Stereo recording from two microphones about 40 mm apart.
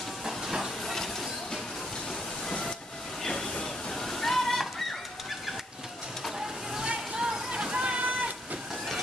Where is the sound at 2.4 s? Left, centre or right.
Centre.